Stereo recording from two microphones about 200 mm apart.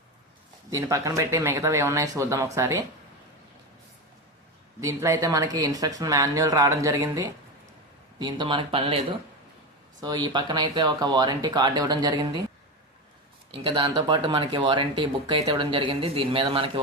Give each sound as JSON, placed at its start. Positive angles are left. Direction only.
{"t": 0.7, "sound": "speech", "side_deg": -15}
{"t": 4.8, "sound": "speech", "side_deg": -15}
{"t": 10.0, "sound": "speech", "side_deg": -20}
{"t": 13.6, "sound": "speech", "side_deg": -25}